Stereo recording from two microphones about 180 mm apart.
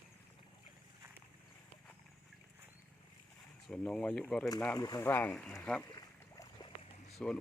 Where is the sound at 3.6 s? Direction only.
5° left (ahead or behind).